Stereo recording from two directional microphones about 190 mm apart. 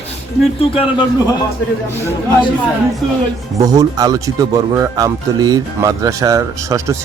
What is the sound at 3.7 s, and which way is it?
Speech, 20° right (ahead or behind).